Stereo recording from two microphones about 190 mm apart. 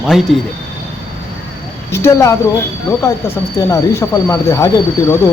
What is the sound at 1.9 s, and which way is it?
Speech, 15° left (ahead or behind).